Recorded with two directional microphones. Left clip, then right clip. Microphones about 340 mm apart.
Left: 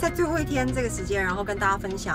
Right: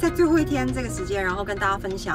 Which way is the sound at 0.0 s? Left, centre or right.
Centre.